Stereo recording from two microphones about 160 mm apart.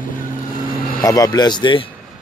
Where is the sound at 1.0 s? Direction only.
25° left (ahead or behind).